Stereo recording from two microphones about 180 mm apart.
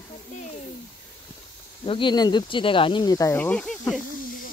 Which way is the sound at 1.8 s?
30° left (ahead or behind).